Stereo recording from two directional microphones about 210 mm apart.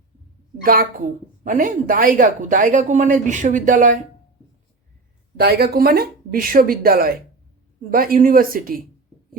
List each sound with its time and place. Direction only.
0.6 s speech: 45° right (ahead or behind)
5.4 s speech: 50° right (ahead or behind)